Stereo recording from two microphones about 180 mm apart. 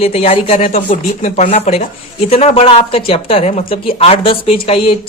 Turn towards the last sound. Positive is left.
turn(degrees=30)  # may be behind; listen again after turning